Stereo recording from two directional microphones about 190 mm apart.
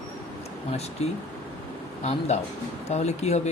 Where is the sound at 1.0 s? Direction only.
35° left (ahead or behind).